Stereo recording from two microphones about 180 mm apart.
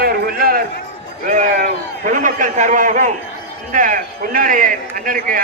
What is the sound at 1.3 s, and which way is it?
A man's voice, 45° right (ahead or behind).